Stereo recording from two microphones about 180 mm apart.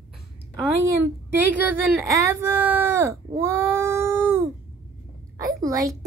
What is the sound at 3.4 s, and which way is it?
Baby cry, 15° right (ahead or behind).